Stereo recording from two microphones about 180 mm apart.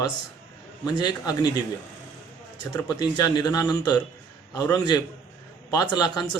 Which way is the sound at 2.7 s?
20° left (ahead or behind).